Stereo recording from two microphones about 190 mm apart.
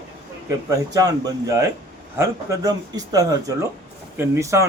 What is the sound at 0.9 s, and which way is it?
A man's voice, 20° right (ahead or behind).